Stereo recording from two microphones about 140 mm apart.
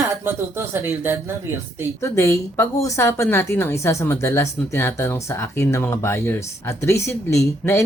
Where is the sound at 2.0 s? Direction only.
20° left (ahead or behind).